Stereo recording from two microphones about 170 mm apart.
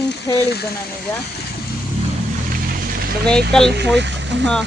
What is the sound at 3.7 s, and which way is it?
Speech, 90° right.